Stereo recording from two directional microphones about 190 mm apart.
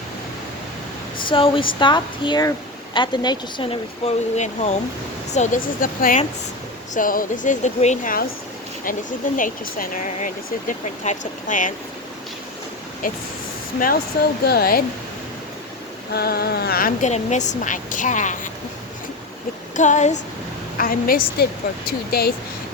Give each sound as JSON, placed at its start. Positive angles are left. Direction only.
{"t": 1.3, "sound": "speech", "side_deg": 25}
{"t": 9.4, "sound": "speech", "side_deg": 45}
{"t": 13.7, "sound": "speech", "side_deg": 50}
{"t": 16.1, "sound": "speech", "side_deg": 55}
{"t": 19.7, "sound": "speech", "side_deg": 40}